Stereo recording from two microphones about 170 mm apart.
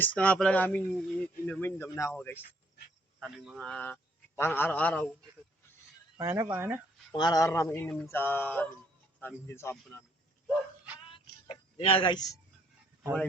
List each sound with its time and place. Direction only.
0.0 s speech: 10° left (ahead or behind)
3.2 s speech: centre (ahead or behind)
6.1 s speech: 15° right (ahead or behind)
7.1 s speech: 25° left (ahead or behind)
11.1 s a sound: 30° left (ahead or behind)